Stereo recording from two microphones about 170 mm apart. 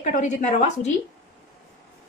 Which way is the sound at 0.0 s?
45° left (ahead or behind).